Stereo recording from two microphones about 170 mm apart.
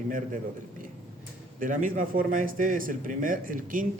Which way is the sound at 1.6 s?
50° right (ahead or behind).